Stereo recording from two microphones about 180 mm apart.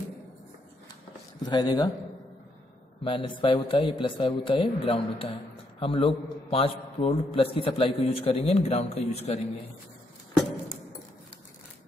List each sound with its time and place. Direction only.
1.4 s a man's voice: 25° left (ahead or behind)
3.0 s a man's voice: 30° left (ahead or behind)